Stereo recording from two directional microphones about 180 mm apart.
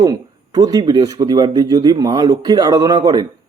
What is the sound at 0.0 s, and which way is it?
A man's voice, 20° right (ahead or behind).